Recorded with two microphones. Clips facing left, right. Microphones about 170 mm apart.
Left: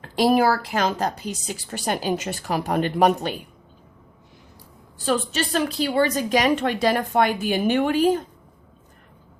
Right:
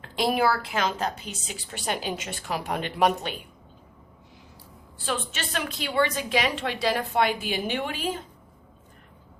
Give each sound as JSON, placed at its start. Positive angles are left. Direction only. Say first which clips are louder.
{"t": 0.0, "sound": "a woman's voice", "louder": "left 6 dB", "side_deg": 40}
{"t": 5.0, "sound": "a woman's voice", "louder": "left 8 dB", "side_deg": 40}